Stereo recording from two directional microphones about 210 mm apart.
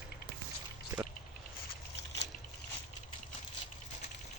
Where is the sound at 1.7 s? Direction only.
30° left (ahead or behind).